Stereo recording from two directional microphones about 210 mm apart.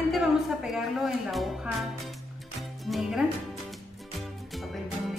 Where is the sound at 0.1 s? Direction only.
Centre (ahead or behind).